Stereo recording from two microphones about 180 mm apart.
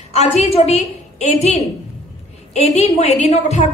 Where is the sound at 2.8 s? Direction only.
35° left (ahead or behind).